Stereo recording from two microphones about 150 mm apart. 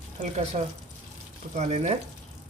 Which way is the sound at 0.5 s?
45° right (ahead or behind).